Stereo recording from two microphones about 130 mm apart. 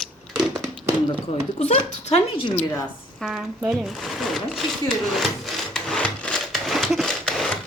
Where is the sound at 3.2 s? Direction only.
5° right (ahead or behind).